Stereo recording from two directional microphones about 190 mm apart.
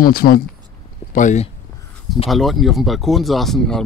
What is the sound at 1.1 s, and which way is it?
Speech, 40° left (ahead or behind).